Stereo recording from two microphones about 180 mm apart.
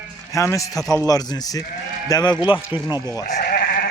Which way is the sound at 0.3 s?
15° left (ahead or behind).